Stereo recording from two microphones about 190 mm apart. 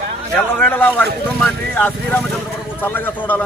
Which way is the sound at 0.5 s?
10° left (ahead or behind).